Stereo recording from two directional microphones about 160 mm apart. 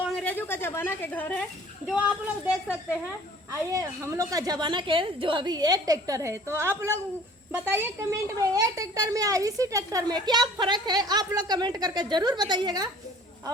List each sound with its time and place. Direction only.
0.2 s a woman's voice: 10° left (ahead or behind)
1.9 s speech: 10° right (ahead or behind)
3.7 s a woman's voice: 20° right (ahead or behind)